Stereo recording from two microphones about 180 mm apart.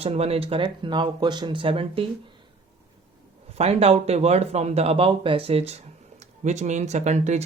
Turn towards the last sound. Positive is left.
turn(degrees=-40)  # may be behind; listen again after turning